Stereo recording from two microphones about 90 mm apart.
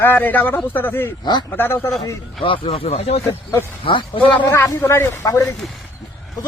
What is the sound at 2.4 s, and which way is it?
Speech, 80° left.